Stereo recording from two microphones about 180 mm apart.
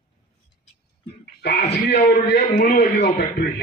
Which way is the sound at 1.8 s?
65° left (ahead or behind).